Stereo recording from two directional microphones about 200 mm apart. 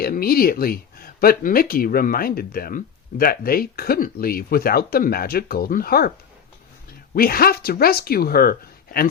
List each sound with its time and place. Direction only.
0.0 s speech: 50° left (ahead or behind)
7.1 s speech: 50° left (ahead or behind)